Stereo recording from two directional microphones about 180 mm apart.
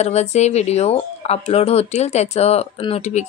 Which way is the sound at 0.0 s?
40° left (ahead or behind).